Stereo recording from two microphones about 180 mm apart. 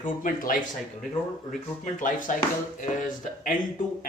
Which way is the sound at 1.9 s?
45° left (ahead or behind).